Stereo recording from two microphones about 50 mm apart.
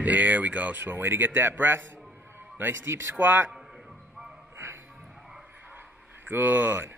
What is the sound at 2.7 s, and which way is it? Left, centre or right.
Speech, right.